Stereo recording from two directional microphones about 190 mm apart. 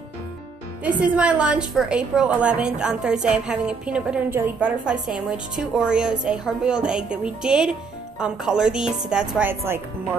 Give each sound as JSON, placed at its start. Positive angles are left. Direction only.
{"t": 0.8, "sound": "a woman's voice", "side_deg": -5}